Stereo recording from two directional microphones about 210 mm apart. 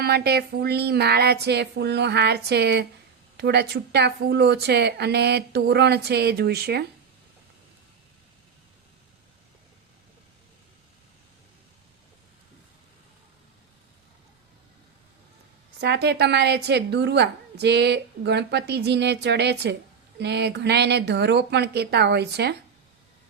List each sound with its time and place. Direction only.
0.0 s a woman's voice: 50° right (ahead or behind)
15.8 s a woman's voice: 50° right (ahead or behind)